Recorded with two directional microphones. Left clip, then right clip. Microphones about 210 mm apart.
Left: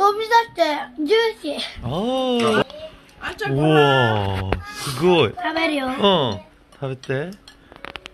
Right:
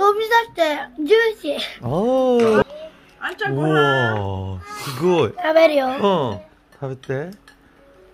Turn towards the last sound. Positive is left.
turn(degrees=-5)  # may be behind; listen again after turning